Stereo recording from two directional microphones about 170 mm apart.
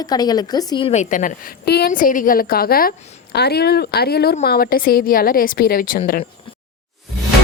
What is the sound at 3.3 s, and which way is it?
A woman's voice, 70° left (ahead or behind).